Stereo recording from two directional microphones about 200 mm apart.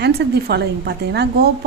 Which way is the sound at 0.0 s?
55° right (ahead or behind).